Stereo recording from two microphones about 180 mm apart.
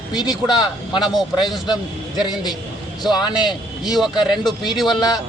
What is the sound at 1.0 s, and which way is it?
Speech, centre (ahead or behind).